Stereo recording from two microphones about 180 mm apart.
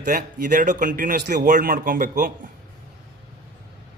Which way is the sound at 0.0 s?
50° right (ahead or behind).